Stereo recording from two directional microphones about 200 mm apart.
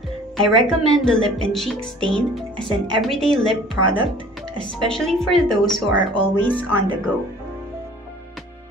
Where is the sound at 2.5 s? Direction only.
25° right (ahead or behind).